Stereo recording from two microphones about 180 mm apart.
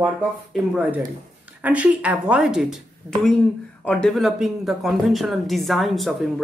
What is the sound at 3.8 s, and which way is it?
Speech, 5° left (ahead or behind).